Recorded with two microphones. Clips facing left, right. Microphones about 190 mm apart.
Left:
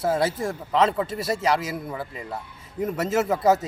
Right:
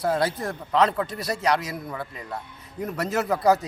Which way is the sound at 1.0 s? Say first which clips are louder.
Left 3 dB; 25° left (ahead or behind).